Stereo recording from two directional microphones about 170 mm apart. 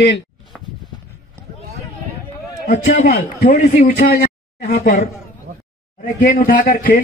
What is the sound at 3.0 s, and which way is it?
A man's voice, 60° left (ahead or behind).